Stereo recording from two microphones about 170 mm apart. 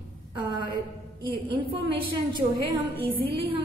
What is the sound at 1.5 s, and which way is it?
A woman's voice, 30° right (ahead or behind).